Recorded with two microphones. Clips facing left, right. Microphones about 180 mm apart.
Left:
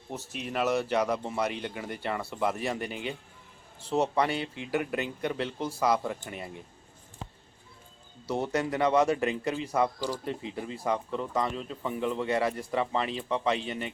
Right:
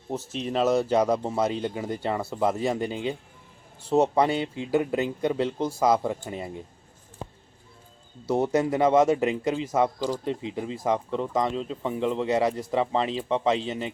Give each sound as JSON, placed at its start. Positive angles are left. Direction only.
{"t": 0.1, "sound": "speech", "side_deg": -35}
{"t": 0.5, "sound": "speech", "side_deg": -20}
{"t": 8.3, "sound": "speech", "side_deg": -20}